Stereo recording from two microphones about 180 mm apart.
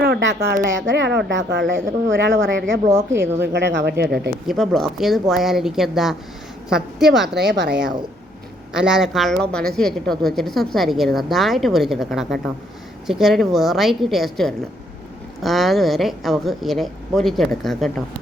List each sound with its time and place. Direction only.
0.0 s speech: 75° right (ahead or behind)
0.6 s speech: 90° right
2.5 s speech: 80° right
4.4 s a woman's voice: centre (ahead or behind)
7.3 s speech: 70° right (ahead or behind)
8.7 s a woman's voice: 5° right (ahead or behind)